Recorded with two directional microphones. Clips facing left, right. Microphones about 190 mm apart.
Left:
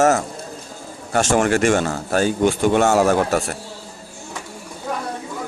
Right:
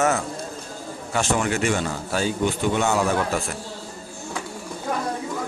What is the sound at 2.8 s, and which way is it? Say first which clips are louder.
Speech: left 6 dB; 45° left (ahead or behind).